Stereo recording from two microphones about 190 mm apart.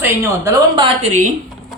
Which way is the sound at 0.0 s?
15° right (ahead or behind).